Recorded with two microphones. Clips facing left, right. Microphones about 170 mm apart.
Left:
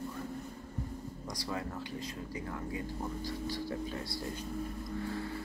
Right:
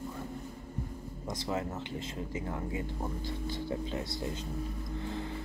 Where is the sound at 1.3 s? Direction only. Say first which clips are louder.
Right 4 dB; 25° right (ahead or behind).